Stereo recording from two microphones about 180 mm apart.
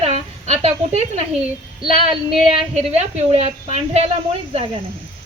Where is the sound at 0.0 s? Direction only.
35° right (ahead or behind).